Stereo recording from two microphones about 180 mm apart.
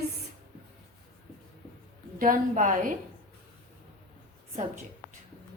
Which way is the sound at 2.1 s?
45° right (ahead or behind).